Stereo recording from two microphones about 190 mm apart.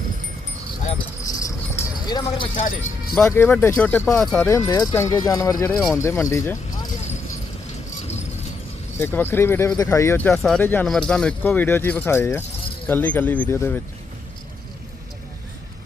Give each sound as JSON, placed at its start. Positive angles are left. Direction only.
{"t": 1.4, "sound": "keys jangling", "side_deg": 15}
{"t": 2.6, "sound": "speech", "side_deg": 45}
{"t": 3.2, "sound": "speech", "side_deg": 10}
{"t": 4.4, "sound": "speech", "side_deg": 15}
{"t": 5.7, "sound": "speech", "side_deg": 0}
{"t": 6.0, "sound": "speech", "side_deg": 15}
{"t": 9.0, "sound": "speech", "side_deg": 10}